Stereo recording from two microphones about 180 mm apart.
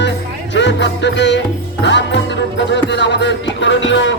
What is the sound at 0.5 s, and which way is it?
Music, 80° left.